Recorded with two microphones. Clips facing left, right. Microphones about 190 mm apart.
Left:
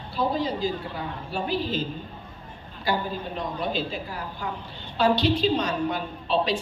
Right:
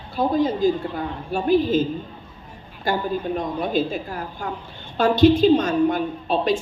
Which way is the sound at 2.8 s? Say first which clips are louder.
Right 5 dB; 50° right (ahead or behind).